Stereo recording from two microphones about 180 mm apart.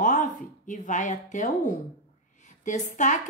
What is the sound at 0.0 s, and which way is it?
A woman's voice, 45° left (ahead or behind).